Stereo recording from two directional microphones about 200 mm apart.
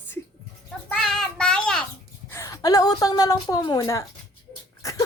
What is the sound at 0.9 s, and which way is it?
Child singing, 5° left (ahead or behind).